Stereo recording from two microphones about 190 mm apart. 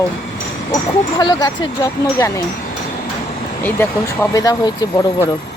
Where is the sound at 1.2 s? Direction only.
20° left (ahead or behind).